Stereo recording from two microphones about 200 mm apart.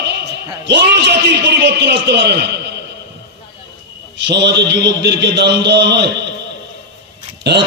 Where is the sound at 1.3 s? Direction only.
60° right (ahead or behind).